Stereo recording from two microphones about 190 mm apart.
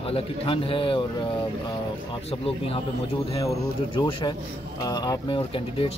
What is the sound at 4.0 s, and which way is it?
Speech, 25° left (ahead or behind).